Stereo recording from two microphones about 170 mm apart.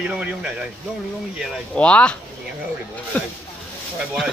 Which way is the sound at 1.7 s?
5° left (ahead or behind).